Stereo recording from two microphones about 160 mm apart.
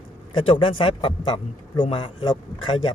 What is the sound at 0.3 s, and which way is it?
A man's voice, 35° left (ahead or behind).